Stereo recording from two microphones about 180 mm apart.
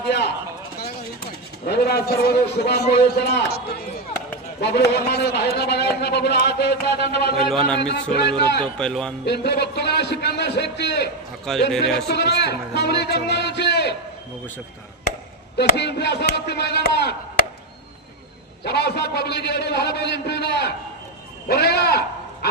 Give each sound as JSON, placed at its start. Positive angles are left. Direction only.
{"t": 0.1, "sound": "a sound", "side_deg": 70}
{"t": 1.6, "sound": "a man's voice", "side_deg": 60}
{"t": 4.6, "sound": "a man's voice", "side_deg": 65}
{"t": 8.8, "sound": "speech", "side_deg": 5}
{"t": 9.2, "sound": "a man's voice", "side_deg": 70}
{"t": 11.7, "sound": "speech", "side_deg": 0}
{"t": 12.0, "sound": "a man's voice", "side_deg": 70}
{"t": 15.5, "sound": "a man's voice", "side_deg": 65}
{"t": 18.6, "sound": "a man's voice", "side_deg": 65}